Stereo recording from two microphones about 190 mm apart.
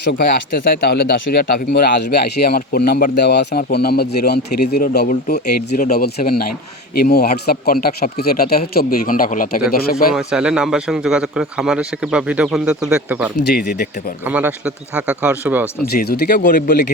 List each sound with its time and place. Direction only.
0.0 s speech: 60° left (ahead or behind)
10.2 s speech: 5° right (ahead or behind)
15.9 s speech: 55° left (ahead or behind)